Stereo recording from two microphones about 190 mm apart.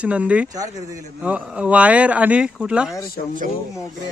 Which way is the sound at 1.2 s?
5° right (ahead or behind).